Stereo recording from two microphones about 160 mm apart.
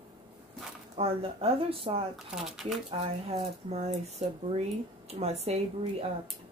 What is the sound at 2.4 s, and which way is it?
Speech, centre (ahead or behind).